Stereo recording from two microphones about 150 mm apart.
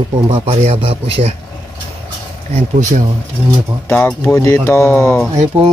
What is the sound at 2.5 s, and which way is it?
Speech, 55° right (ahead or behind).